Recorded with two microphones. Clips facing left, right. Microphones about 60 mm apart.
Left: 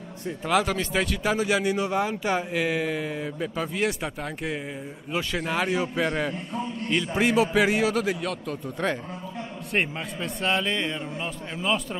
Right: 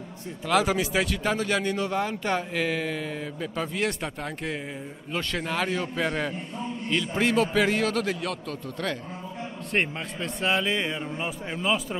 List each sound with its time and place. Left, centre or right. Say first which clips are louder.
0.7 s a man's voice: right 1 dB; centre
8.8 s speech: left 4 dB; left
9.7 s a man's voice: even; centre